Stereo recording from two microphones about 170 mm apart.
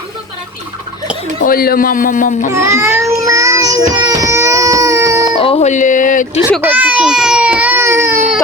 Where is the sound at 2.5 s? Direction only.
15° right (ahead or behind).